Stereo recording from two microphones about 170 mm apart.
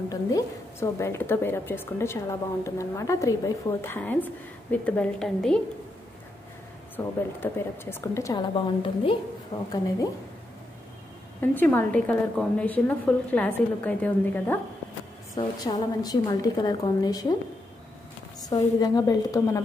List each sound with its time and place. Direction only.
0.1 s a woman's voice: 20° left (ahead or behind)
7.0 s a woman's voice: 10° left (ahead or behind); by 9.1 s 30° left (ahead or behind)
9.5 s a woman's voice: 20° left (ahead or behind)
11.5 s a woman's voice: 10° left (ahead or behind)
15.3 s a woman's voice: 25° left (ahead or behind)
18.4 s a woman's voice: 20° left (ahead or behind)